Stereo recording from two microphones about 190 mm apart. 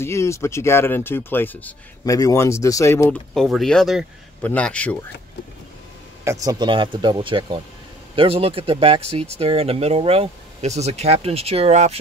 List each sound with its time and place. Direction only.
0.0 s speech: 15° left (ahead or behind)
3.3 s speech: centre (ahead or behind)
6.2 s speech: 20° right (ahead or behind); by 12.0 s 35° right (ahead or behind)